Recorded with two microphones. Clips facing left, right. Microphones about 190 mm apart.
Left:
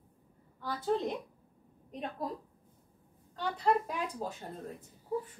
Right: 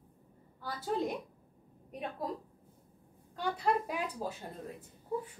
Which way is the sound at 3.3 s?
10° right (ahead or behind).